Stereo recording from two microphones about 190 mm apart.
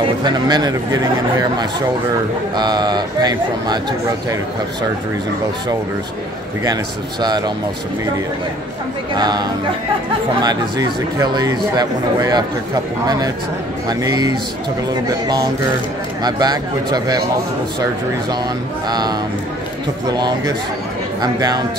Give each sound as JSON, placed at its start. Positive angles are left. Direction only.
{"t": 0.0, "sound": "speech", "side_deg": -20}
{"t": 2.5, "sound": "speech", "side_deg": -20}
{"t": 6.6, "sound": "speech", "side_deg": -20}
{"t": 9.1, "sound": "speech", "side_deg": -20}
{"t": 18.9, "sound": "speech", "side_deg": -20}